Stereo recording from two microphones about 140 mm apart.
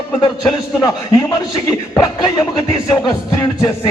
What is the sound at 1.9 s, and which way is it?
Speech, 25° left (ahead or behind).